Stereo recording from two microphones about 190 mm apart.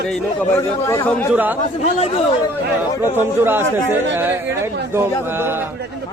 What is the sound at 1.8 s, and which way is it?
Speech, 30° left (ahead or behind).